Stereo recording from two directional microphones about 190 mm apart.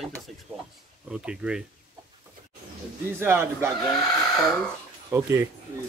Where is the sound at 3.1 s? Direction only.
10° right (ahead or behind).